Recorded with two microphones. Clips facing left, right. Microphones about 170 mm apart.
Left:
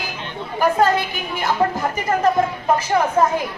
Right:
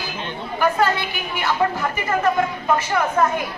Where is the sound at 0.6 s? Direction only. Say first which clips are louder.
Left 3 dB; 40° left (ahead or behind).